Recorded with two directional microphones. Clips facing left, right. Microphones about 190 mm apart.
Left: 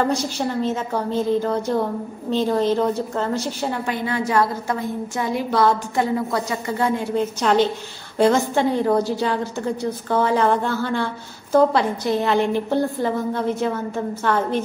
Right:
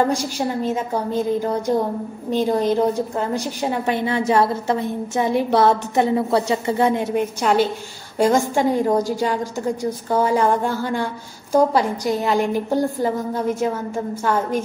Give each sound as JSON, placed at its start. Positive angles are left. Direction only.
{"t": 0.1, "sound": "a woman's voice", "side_deg": -10}
{"t": 7.5, "sound": "a woman's voice", "side_deg": -5}